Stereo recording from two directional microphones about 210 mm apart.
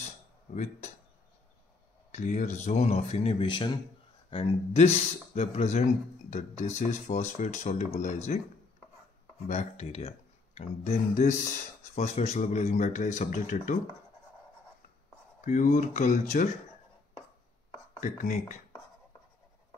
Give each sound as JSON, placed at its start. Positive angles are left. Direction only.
{"t": 0.5, "sound": "speech", "side_deg": 30}
{"t": 2.1, "sound": "speech", "side_deg": 35}
{"t": 9.5, "sound": "speech", "side_deg": 30}
{"t": 15.4, "sound": "speech", "side_deg": 40}
{"t": 18.0, "sound": "speech", "side_deg": 35}